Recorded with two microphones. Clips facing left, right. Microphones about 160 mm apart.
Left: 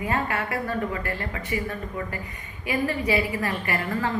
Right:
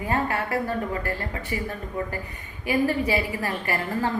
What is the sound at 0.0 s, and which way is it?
A woman's voice, 35° right (ahead or behind).